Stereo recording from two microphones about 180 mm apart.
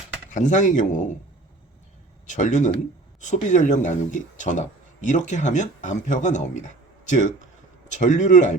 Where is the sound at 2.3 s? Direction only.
45° left (ahead or behind).